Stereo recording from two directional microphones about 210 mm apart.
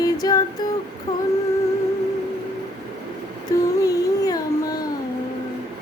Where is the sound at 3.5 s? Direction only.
15° left (ahead or behind).